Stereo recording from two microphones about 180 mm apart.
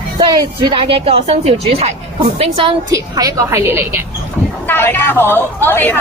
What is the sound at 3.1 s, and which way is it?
Speech, 20° right (ahead or behind).